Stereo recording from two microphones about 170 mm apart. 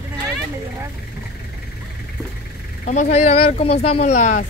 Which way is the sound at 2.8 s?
45° left (ahead or behind).